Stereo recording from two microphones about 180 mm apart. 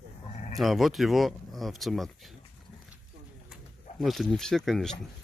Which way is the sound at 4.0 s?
Centre (ahead or behind).